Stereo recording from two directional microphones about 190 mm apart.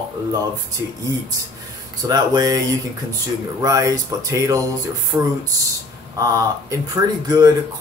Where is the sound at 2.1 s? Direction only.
20° right (ahead or behind).